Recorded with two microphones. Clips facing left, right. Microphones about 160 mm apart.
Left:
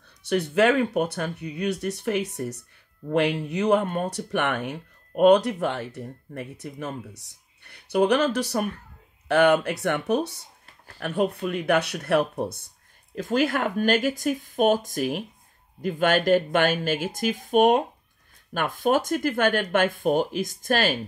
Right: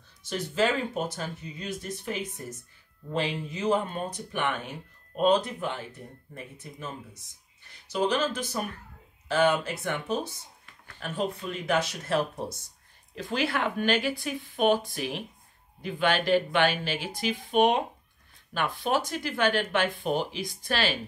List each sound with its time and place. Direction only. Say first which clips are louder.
0.3 s speech: left 6 dB; 65° left (ahead or behind); by 21.0 s 45° left (ahead or behind)